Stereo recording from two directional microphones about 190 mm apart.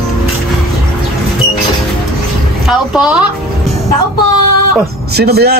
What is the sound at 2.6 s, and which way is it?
Speech, 5° right (ahead or behind).